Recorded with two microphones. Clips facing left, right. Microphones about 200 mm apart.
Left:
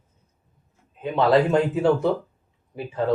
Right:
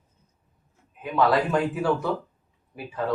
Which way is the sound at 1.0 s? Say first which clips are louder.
Left 4 dB; 25° left (ahead or behind).